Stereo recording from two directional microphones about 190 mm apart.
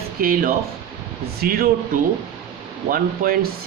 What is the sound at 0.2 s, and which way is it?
Speech, 50° right (ahead or behind).